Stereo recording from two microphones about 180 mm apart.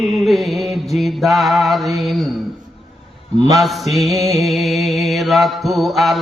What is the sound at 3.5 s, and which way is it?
Mantra, centre (ahead or behind).